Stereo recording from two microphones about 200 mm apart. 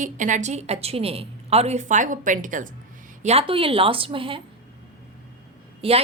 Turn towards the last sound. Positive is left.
turn(degrees=-30)  # may be behind; listen again after turning